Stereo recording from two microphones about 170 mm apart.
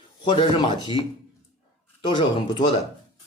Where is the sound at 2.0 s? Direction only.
30° left (ahead or behind).